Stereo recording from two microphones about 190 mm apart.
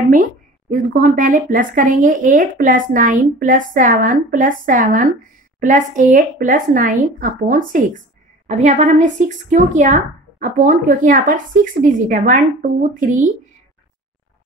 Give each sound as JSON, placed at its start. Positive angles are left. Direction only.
{"t": 0.1, "sound": "speech", "side_deg": -45}